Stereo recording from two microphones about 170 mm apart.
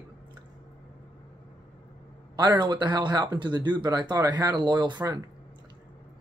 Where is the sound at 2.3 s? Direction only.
25° right (ahead or behind).